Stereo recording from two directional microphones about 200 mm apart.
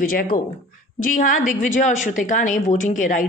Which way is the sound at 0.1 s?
45° left (ahead or behind).